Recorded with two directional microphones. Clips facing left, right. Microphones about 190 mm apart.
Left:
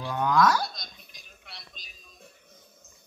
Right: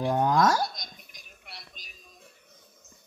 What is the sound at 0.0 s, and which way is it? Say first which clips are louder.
Speech: right 1 dB; 40° right (ahead or behind).